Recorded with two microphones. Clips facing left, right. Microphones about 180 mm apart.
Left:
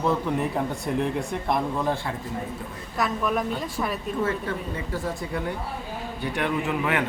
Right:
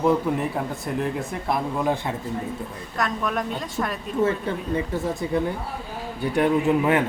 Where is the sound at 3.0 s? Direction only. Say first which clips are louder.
Left 1 dB; 5° left (ahead or behind).